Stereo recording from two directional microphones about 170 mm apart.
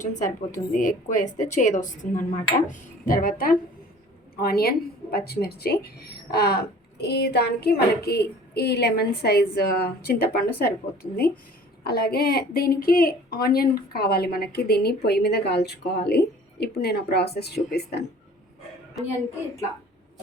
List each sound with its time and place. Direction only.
0.2 s a woman's voice: 50° left (ahead or behind); by 18.0 s 70° left (ahead or behind)